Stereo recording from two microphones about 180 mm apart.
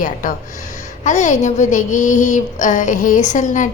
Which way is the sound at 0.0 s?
45° left (ahead or behind).